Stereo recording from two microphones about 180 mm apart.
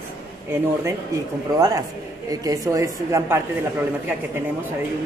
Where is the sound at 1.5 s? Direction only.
20° right (ahead or behind).